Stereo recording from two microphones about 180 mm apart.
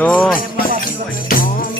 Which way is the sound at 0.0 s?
10° left (ahead or behind).